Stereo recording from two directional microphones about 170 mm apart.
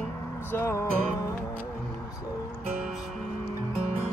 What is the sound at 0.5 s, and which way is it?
Music, 15° left (ahead or behind).